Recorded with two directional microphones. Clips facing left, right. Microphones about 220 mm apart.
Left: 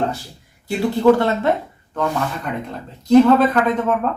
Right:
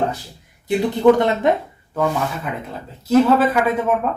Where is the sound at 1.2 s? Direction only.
15° right (ahead or behind).